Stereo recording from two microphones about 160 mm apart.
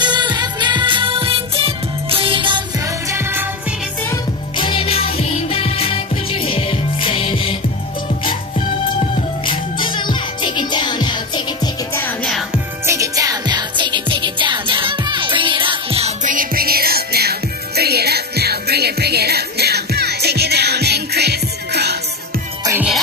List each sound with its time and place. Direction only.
0.0 s music: 25° right (ahead or behind)
4.6 s music: 35° left (ahead or behind)
11.9 s music: 10° left (ahead or behind)
12.8 s music: 20° right (ahead or behind); by 16.1 s 35° right (ahead or behind)
16.2 s music: 55° right (ahead or behind); by 21.9 s 90° right